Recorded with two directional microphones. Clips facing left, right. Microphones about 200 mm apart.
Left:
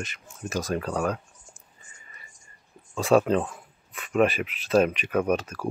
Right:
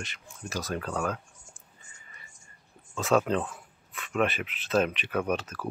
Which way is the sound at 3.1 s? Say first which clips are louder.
Left 4 dB; 10° left (ahead or behind).